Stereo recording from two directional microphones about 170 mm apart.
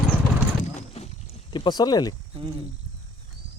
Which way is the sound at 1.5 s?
25° left (ahead or behind).